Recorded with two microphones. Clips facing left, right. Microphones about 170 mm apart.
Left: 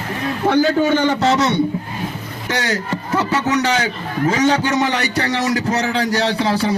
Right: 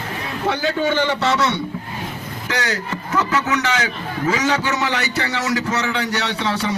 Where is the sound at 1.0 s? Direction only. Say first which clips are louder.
Left 3 dB; 40° left (ahead or behind).